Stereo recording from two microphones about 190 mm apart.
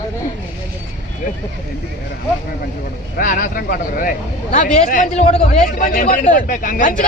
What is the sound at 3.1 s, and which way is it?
A man's voice, 45° left (ahead or behind).